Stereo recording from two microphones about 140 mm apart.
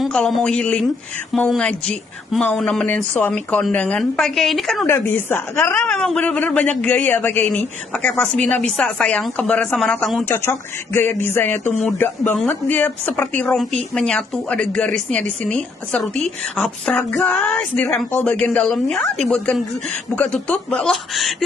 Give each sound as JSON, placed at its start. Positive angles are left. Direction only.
{"t": 0.0, "sound": "a woman's voice", "side_deg": 0}
{"t": 4.8, "sound": "a man's voice", "side_deg": 15}
{"t": 5.8, "sound": "a man's voice", "side_deg": 5}
{"t": 10.2, "sound": "a man's voice", "side_deg": 20}